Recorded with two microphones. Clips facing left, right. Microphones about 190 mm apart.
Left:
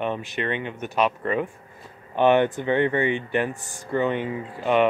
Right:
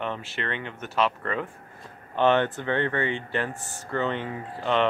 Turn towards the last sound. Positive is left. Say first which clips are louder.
# left 4 dB
turn(degrees=15)  # may be behind; listen again after turning